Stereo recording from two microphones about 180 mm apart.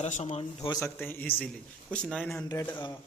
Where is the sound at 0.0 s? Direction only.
40° left (ahead or behind).